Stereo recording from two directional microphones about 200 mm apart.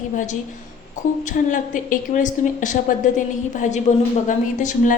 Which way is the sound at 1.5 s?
40° left (ahead or behind).